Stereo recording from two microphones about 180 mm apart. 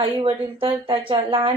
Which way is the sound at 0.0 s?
30° right (ahead or behind).